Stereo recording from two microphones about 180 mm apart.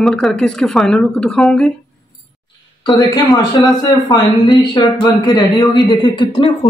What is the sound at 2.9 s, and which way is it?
Speech, 20° left (ahead or behind).